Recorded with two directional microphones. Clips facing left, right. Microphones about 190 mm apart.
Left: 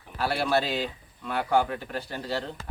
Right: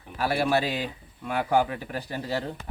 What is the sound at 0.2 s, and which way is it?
A man's voice, 15° right (ahead or behind).